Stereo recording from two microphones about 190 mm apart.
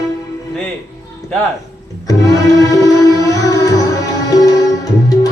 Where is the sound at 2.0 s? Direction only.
20° left (ahead or behind).